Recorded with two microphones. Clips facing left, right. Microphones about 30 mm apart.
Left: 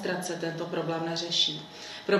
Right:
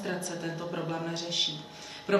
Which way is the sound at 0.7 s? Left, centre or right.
Centre.